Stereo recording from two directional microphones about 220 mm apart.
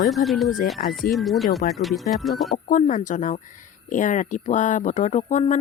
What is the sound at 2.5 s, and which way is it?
Speech, 35° left (ahead or behind).